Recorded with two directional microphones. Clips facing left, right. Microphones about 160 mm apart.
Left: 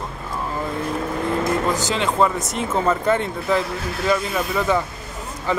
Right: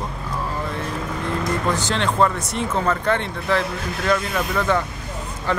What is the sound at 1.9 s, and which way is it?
A man's voice, 5° left (ahead or behind).